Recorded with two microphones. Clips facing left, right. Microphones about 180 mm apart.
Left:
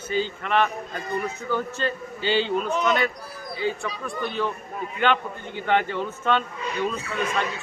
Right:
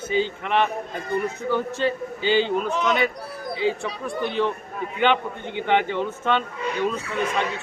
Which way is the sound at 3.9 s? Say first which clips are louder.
Right 3 dB; 65° right (ahead or behind).